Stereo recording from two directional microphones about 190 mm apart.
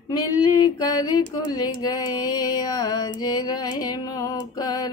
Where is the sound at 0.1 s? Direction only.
20° left (ahead or behind).